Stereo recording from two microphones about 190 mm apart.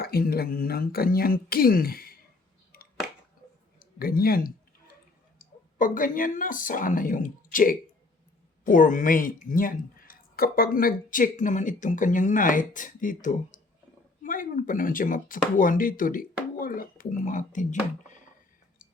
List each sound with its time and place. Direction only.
0.0 s speech: 55° left (ahead or behind)
2.7 s a sound: 50° left (ahead or behind)
3.8 s speech: 50° left (ahead or behind)